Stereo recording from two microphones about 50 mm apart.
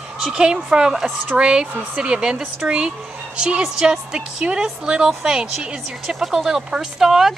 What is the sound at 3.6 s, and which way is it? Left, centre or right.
Speech, centre.